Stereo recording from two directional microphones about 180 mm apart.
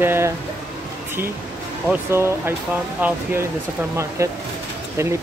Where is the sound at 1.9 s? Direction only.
15° right (ahead or behind).